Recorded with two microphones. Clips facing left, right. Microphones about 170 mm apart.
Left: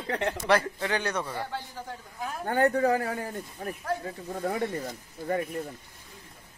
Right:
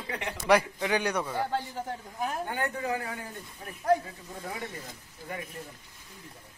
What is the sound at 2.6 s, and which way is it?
Speech, 40° left (ahead or behind).